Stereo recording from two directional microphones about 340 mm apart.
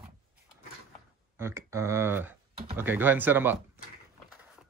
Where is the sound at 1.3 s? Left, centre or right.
Centre.